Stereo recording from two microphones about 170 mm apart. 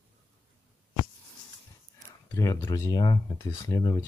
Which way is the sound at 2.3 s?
20° left (ahead or behind).